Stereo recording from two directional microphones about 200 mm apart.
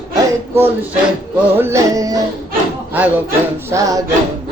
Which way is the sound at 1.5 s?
15° right (ahead or behind).